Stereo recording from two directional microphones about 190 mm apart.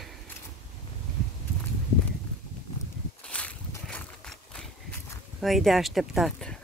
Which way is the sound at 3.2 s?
5° left (ahead or behind).